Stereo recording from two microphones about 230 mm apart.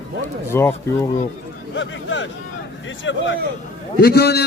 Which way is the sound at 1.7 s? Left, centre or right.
Left.